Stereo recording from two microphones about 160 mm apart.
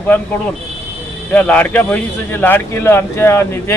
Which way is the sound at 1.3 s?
10° left (ahead or behind).